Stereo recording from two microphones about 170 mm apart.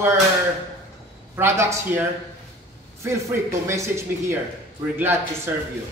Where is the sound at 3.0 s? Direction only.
15° right (ahead or behind).